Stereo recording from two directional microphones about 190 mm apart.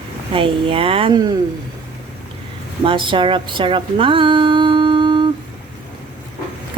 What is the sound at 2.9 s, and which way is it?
A woman's voice, 25° right (ahead or behind).